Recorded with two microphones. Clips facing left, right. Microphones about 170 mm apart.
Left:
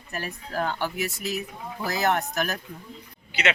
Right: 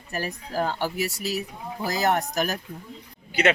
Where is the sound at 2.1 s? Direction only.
10° right (ahead or behind).